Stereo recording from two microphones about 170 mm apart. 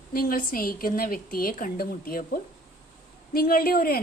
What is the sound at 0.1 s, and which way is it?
A woman's voice, 60° left (ahead or behind).